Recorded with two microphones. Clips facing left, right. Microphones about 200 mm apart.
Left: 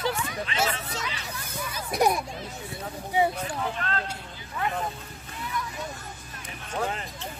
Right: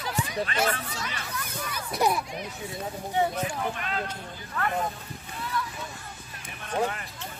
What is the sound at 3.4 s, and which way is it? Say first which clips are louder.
Speech: even; 10° right (ahead or behind).